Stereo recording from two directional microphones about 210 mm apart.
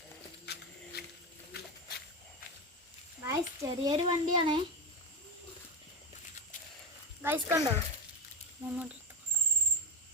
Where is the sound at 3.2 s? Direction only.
15° right (ahead or behind).